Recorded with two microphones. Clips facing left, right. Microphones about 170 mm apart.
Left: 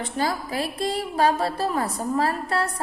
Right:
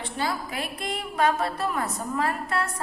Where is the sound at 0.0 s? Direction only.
40° left (ahead or behind).